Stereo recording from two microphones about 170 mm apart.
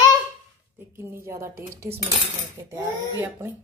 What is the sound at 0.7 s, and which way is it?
Speech, 15° right (ahead or behind).